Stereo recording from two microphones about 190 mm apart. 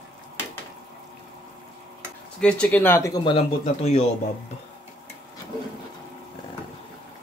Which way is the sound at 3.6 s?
35° left (ahead or behind).